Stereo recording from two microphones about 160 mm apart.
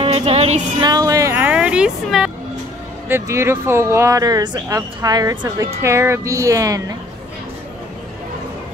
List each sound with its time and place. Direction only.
0.0 s music: 35° right (ahead or behind)
0.8 s speech: 25° right (ahead or behind); by 2.3 s 5° right (ahead or behind)
3.1 s speech: 15° right (ahead or behind)